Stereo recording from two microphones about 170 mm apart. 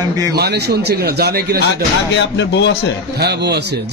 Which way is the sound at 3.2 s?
75° right (ahead or behind).